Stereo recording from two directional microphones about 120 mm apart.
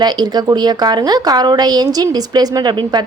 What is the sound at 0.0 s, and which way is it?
A woman's voice, 35° right (ahead or behind).